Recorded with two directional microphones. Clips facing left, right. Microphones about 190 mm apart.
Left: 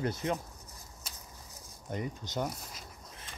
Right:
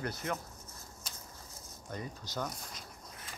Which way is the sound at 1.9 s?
20° left (ahead or behind).